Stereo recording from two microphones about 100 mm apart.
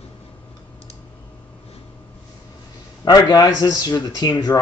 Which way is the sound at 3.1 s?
40° left (ahead or behind).